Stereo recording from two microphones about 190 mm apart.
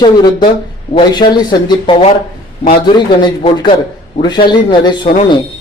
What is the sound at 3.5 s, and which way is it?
Speech, 25° left (ahead or behind).